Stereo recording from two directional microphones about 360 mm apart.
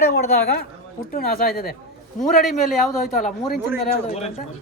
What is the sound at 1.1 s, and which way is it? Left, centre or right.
Speech, left.